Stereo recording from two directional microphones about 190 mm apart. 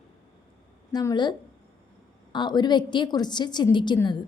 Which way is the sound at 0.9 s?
20° left (ahead or behind).